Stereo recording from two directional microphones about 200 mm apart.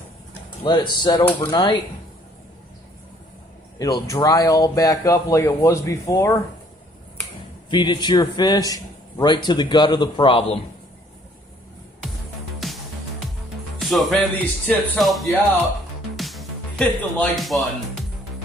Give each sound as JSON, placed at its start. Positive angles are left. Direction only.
{"t": 0.6, "sound": "a man's voice", "side_deg": 25}
{"t": 1.2, "sound": "speech", "side_deg": 10}
{"t": 1.5, "sound": "a man's voice", "side_deg": 20}
{"t": 3.7, "sound": "speech", "side_deg": 20}
{"t": 7.7, "sound": "a man's voice", "side_deg": 25}
{"t": 12.6, "sound": "music", "side_deg": 0}
{"t": 13.7, "sound": "speech", "side_deg": 0}
{"t": 16.2, "sound": "music", "side_deg": 0}